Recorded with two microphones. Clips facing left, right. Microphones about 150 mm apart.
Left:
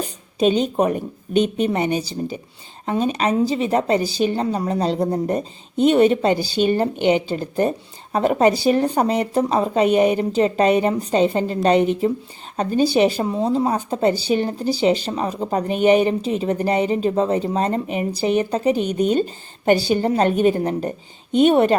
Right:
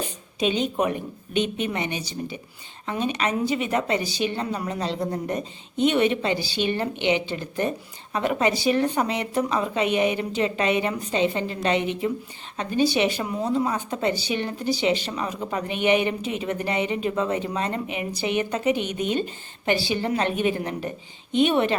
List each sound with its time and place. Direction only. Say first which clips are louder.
0.0 s a woman's voice: left 7 dB; 40° left (ahead or behind)